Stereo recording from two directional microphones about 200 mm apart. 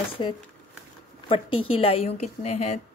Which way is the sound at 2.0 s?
35° left (ahead or behind).